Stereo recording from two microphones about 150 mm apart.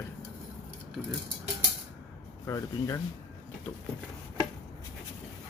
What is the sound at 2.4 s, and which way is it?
Speech, 20° left (ahead or behind).